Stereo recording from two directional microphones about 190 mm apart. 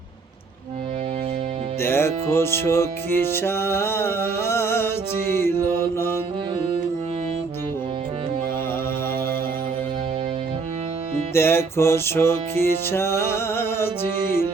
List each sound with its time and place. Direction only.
1.8 s music: 15° left (ahead or behind)
5.6 s mantra: 10° left (ahead or behind)
11.3 s music: 10° left (ahead or behind)